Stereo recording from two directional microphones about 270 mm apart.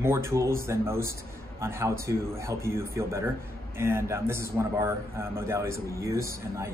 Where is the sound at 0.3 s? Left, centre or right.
Centre.